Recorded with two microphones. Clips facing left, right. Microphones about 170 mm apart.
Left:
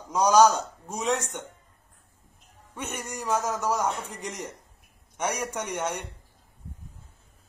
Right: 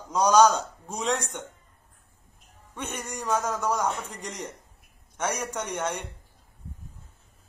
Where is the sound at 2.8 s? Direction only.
10° left (ahead or behind).